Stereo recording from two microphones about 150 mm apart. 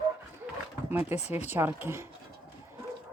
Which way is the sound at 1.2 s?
45° left (ahead or behind).